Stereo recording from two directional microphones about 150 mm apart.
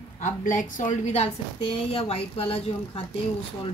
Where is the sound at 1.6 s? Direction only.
35° left (ahead or behind).